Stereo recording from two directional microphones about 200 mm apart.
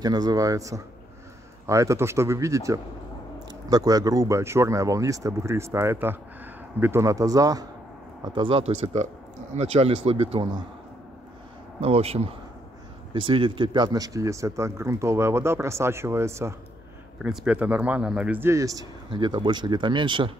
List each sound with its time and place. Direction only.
0.0 s speech: 20° right (ahead or behind)
11.8 s speech: 30° right (ahead or behind); by 16.5 s 15° right (ahead or behind)
17.2 s speech: 5° right (ahead or behind); by 20.2 s 25° right (ahead or behind)